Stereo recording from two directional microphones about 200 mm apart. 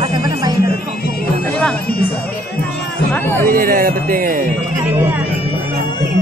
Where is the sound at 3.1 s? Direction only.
10° left (ahead or behind).